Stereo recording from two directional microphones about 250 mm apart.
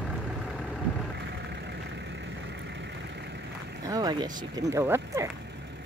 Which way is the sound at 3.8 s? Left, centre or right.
Centre.